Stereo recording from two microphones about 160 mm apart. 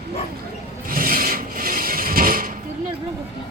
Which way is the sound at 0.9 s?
60° right (ahead or behind).